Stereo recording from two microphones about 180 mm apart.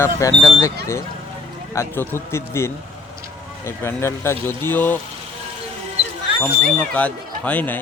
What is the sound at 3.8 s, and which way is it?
Speech, 15° left (ahead or behind).